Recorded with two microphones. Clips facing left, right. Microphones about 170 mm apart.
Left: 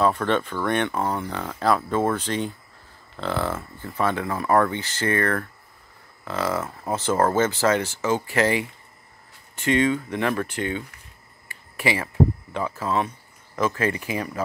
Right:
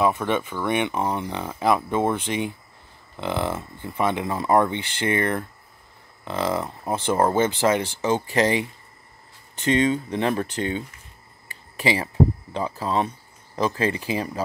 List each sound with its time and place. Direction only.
0.0 s speech: 10° right (ahead or behind); by 10.7 s 35° right (ahead or behind)
11.8 s speech: 35° right (ahead or behind)